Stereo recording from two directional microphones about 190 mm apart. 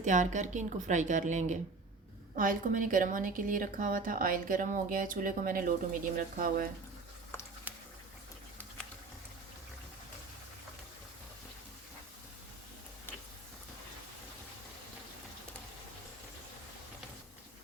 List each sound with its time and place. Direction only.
0.0 s a woman's voice: 40° right (ahead or behind)